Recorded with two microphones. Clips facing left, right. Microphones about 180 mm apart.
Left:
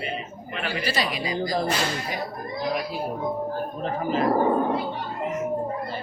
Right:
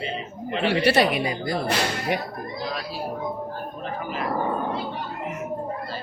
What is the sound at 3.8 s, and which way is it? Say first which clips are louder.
Speech: left 6 dB; 35° left (ahead or behind).